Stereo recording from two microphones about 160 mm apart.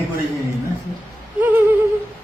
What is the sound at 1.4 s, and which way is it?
Speech, 10° right (ahead or behind).